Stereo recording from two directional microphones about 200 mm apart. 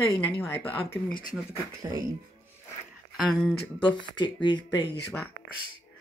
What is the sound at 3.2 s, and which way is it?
Speech, centre (ahead or behind).